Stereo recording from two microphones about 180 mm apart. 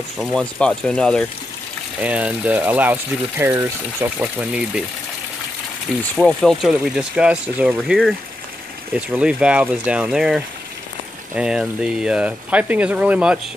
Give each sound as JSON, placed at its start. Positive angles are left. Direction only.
{"t": 0.2, "sound": "speech", "side_deg": 5}
{"t": 2.0, "sound": "speech", "side_deg": -10}
{"t": 6.1, "sound": "speech", "side_deg": 0}